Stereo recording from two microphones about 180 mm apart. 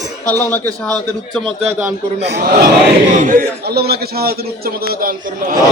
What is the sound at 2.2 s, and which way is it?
Speech, 60° right (ahead or behind).